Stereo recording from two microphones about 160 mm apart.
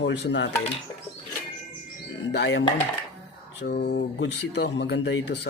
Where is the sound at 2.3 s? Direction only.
90° left.